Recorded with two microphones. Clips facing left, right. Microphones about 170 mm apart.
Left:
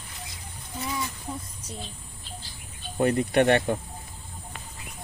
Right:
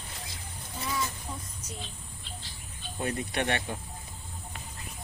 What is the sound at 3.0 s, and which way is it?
Speech, 60° left (ahead or behind).